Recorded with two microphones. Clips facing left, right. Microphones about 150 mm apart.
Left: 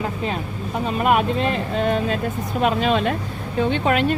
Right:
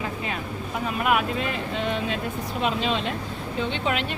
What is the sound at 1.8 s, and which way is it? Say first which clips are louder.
Speech: left 6 dB; 45° left (ahead or behind).